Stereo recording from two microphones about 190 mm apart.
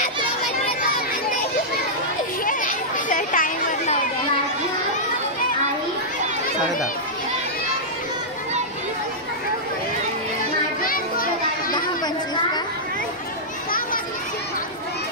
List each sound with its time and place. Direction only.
2.4 s chatter: 45° left (ahead or behind)
10.8 s children playing: 50° left (ahead or behind)